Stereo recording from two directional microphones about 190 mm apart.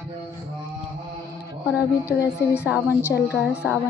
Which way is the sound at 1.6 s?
5° right (ahead or behind).